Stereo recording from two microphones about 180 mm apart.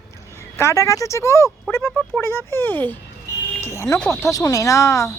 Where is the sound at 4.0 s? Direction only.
15° left (ahead or behind).